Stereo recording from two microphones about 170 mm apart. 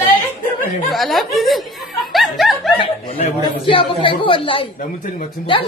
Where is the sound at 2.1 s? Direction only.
Centre (ahead or behind).